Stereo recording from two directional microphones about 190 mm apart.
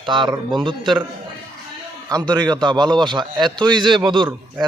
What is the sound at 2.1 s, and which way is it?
Speech, 20° right (ahead or behind).